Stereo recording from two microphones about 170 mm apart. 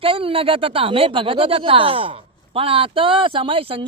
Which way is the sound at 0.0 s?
30° right (ahead or behind).